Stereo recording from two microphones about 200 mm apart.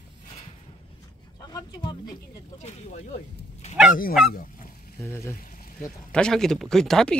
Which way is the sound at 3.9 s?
45° left (ahead or behind).